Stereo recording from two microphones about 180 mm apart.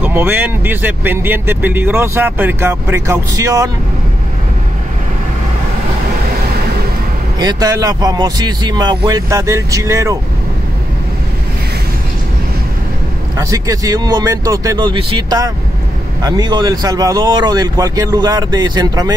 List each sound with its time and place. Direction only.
0.0 s speech: 10° right (ahead or behind)
7.3 s speech: 20° right (ahead or behind)
13.4 s speech: 20° right (ahead or behind)